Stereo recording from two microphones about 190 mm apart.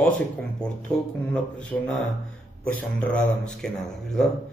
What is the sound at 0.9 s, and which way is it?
A man's voice, centre (ahead or behind).